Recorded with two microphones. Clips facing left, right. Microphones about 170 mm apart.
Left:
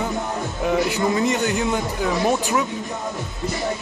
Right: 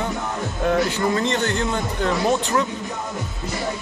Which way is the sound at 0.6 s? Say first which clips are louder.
Even; 10° left (ahead or behind).